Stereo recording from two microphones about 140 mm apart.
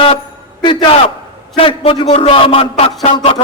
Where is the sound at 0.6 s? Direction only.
35° left (ahead or behind).